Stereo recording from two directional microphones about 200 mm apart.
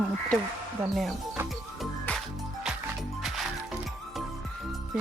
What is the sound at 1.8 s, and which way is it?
Music, centre (ahead or behind).